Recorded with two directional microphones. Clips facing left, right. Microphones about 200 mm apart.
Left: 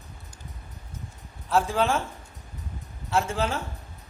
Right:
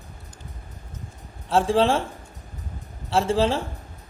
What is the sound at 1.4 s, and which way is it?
Speech, 30° right (ahead or behind).